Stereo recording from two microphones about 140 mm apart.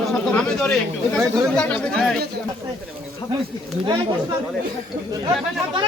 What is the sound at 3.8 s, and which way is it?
Speech, 35° right (ahead or behind).